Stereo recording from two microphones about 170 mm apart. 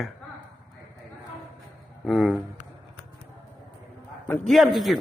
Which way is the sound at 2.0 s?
Centre (ahead or behind).